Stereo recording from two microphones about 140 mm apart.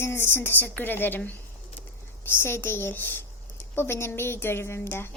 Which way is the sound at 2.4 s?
15° left (ahead or behind).